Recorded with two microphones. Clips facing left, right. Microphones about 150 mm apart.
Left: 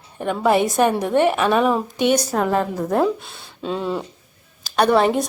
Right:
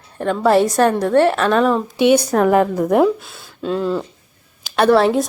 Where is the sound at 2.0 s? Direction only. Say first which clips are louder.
Right 6 dB; 10° right (ahead or behind).